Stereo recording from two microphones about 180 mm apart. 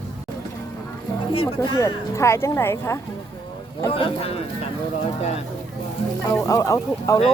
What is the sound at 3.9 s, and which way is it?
Speech, 30° left (ahead or behind).